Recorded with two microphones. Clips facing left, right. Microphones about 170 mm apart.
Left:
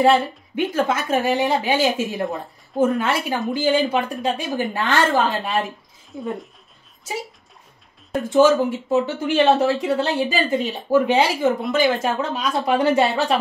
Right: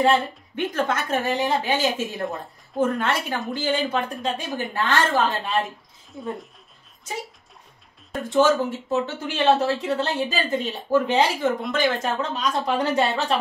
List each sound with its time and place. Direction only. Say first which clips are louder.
0.0 s speech: left 4 dB; 10° left (ahead or behind)
6.1 s speech: left 3 dB; centre (ahead or behind)
8.3 s speech: left 4 dB; 10° left (ahead or behind)